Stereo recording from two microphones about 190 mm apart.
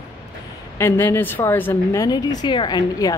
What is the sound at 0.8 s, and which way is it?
A woman's voice, 10° left (ahead or behind).